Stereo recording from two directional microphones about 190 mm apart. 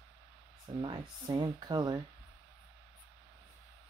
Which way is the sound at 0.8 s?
25° right (ahead or behind).